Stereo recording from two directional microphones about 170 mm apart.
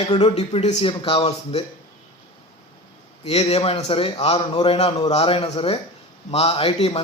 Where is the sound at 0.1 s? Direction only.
35° left (ahead or behind).